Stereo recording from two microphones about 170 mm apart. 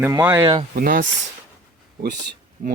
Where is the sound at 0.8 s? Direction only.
55° right (ahead or behind).